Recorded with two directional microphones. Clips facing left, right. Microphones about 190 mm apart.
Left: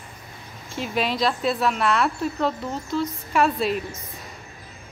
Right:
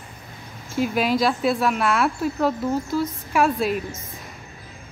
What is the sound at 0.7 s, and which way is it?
Speech, 5° right (ahead or behind).